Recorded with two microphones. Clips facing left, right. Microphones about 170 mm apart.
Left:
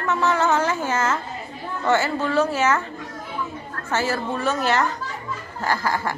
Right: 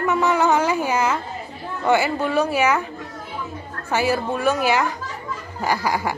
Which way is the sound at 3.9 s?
10° right (ahead or behind).